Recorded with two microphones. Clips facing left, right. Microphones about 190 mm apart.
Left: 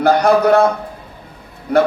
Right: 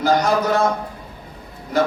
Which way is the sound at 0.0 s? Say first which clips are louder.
Left 5 dB; 60° left (ahead or behind).